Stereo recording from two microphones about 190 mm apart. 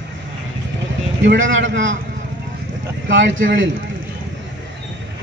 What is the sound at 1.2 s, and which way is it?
Speech, 80° right.